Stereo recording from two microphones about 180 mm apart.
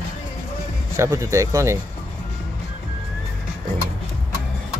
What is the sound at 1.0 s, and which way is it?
Speech, 15° right (ahead or behind).